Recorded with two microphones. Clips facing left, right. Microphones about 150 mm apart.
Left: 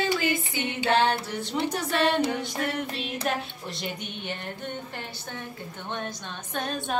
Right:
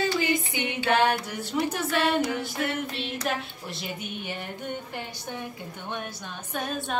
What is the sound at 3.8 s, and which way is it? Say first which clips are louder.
Speech: even; 5° right (ahead or behind).